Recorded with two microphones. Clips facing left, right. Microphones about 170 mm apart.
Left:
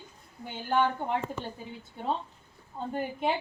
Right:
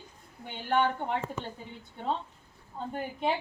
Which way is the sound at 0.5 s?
5° left (ahead or behind).